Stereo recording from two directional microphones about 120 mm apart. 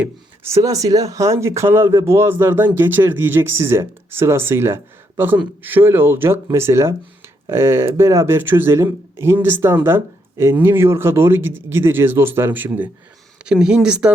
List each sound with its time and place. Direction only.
0.4 s speech: 25° right (ahead or behind); by 14.1 s 5° right (ahead or behind)